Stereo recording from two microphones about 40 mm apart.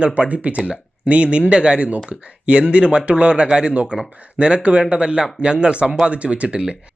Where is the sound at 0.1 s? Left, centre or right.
Right.